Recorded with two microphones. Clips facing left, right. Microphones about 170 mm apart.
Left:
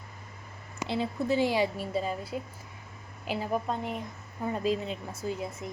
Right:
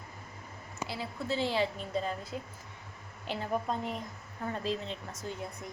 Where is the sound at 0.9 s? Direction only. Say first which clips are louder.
Left 8 dB; 20° left (ahead or behind).